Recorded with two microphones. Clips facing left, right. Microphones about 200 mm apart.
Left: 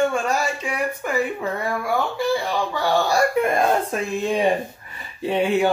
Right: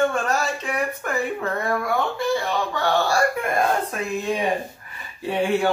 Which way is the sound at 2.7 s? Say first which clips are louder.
Left 1 dB; 10° left (ahead or behind).